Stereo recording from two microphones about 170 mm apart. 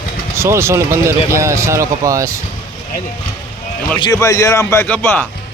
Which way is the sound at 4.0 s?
20° left (ahead or behind).